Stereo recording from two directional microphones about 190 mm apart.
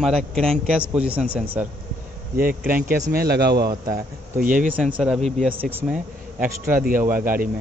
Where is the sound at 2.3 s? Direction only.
50° right (ahead or behind).